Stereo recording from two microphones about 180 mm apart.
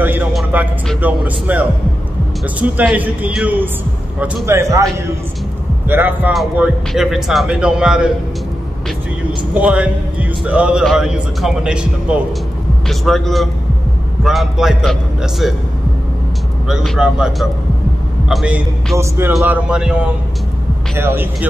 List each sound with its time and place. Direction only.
0.0 s music: 10° right (ahead or behind)
1.0 s a man's voice: 10° right (ahead or behind)
2.6 s a man's voice: 5° right (ahead or behind)
5.9 s a man's voice: 10° right (ahead or behind)
9.5 s a man's voice: 5° right (ahead or behind)
16.6 s a man's voice: centre (ahead or behind)
18.9 s a man's voice: 15° right (ahead or behind)